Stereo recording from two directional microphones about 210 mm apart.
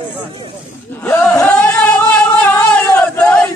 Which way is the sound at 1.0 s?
10° left (ahead or behind).